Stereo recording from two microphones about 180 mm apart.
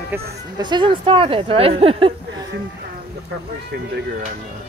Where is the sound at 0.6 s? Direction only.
25° right (ahead or behind).